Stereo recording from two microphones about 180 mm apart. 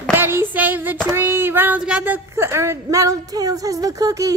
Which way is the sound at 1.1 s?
10° right (ahead or behind).